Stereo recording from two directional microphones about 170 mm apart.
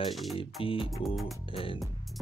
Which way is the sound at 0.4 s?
30° left (ahead or behind).